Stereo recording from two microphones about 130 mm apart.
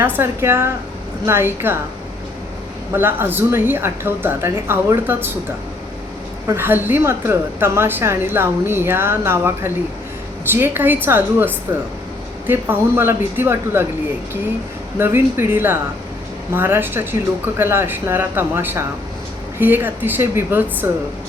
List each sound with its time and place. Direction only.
0.0 s a woman's voice: 20° right (ahead or behind)
2.9 s a woman's voice: 15° right (ahead or behind)
6.5 s a woman's voice: 15° right (ahead or behind)
14.9 s a woman's voice: 15° right (ahead or behind)